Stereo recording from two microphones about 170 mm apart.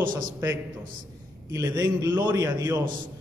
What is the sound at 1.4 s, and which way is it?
A man's voice, 20° right (ahead or behind).